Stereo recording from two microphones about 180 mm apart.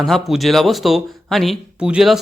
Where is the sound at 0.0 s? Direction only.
Centre (ahead or behind).